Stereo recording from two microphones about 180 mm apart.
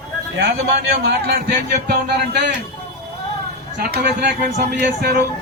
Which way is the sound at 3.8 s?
65° right (ahead or behind).